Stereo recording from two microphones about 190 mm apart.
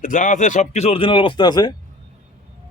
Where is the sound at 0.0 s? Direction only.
45° left (ahead or behind); by 1.7 s 20° left (ahead or behind).